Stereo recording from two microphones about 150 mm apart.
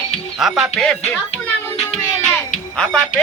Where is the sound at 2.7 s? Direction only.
5° left (ahead or behind).